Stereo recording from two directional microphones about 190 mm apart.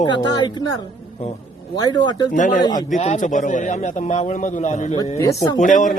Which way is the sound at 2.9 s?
40° left (ahead or behind).